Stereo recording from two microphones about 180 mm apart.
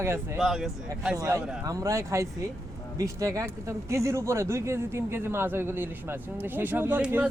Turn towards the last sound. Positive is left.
turn(degrees=-10)  # may be behind; listen again after turning